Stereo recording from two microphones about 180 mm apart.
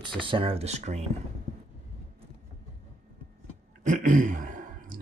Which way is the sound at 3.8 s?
45° right (ahead or behind).